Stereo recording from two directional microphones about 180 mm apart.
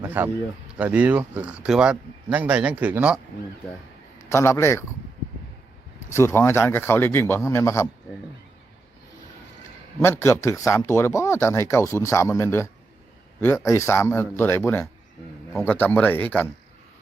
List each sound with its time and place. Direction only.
0.0 s speech: 10° right (ahead or behind)
4.3 s speech: 15° left (ahead or behind)
6.1 s speech: 15° left (ahead or behind)
10.0 s speech: 15° left (ahead or behind)